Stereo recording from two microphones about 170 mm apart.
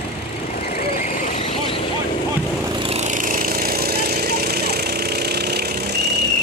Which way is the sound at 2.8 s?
35° right (ahead or behind).